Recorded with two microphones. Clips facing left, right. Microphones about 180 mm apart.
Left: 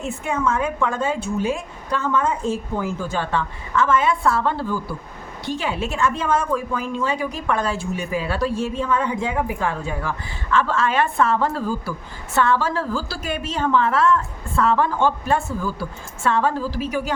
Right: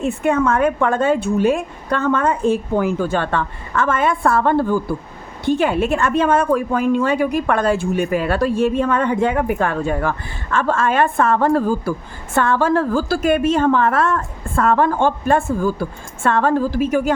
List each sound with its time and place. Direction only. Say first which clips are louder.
0.0 s speech: right 6 dB; 60° right (ahead or behind)